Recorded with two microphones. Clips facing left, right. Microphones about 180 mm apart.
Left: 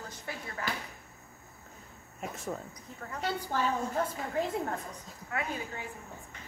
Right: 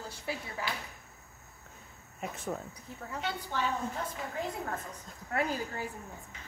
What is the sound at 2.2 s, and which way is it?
Speech, centre (ahead or behind).